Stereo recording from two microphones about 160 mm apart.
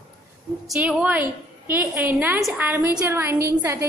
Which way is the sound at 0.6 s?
5° right (ahead or behind).